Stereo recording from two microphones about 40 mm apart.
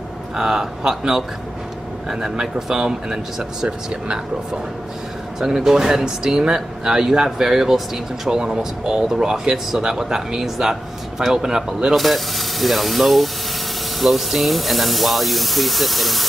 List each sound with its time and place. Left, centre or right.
0.4 s speech: centre
5.7 s speech: centre
8.4 s speech: centre
11.9 s speech: centre